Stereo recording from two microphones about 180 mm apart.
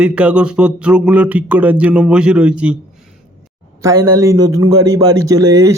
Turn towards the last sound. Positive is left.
turn(degrees=-20)  # may be behind; listen again after turning